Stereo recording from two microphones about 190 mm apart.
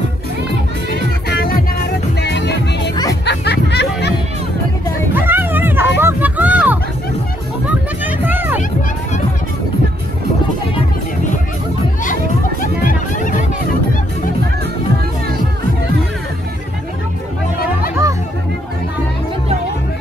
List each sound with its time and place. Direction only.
1.3 s music: 50° left (ahead or behind)
5.1 s a sound: 10° right (ahead or behind)
8.0 s music: 10° right (ahead or behind)
12.8 s music: 45° left (ahead or behind)